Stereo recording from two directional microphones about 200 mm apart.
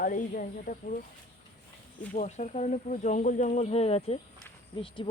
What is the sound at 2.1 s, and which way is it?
Speech, 35° left (ahead or behind).